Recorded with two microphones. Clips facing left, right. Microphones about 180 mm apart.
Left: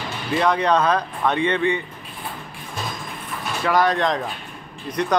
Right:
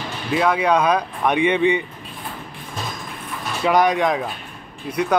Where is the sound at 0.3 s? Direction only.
5° right (ahead or behind).